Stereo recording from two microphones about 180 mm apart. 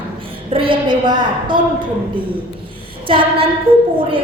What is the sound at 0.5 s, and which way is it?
A woman's voice, 30° right (ahead or behind).